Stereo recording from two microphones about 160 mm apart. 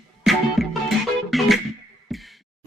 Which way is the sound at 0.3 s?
Centre (ahead or behind).